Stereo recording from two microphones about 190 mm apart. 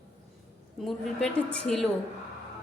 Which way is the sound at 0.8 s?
Centre (ahead or behind).